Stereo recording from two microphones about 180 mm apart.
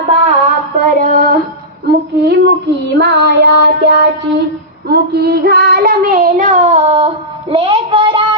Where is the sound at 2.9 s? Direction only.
70° right (ahead or behind).